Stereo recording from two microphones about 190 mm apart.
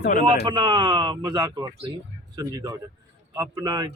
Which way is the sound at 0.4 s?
25° right (ahead or behind).